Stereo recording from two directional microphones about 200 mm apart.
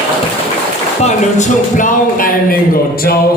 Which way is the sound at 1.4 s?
40° left (ahead or behind).